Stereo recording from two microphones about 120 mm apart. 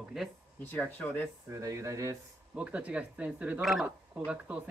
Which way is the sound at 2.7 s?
10° right (ahead or behind).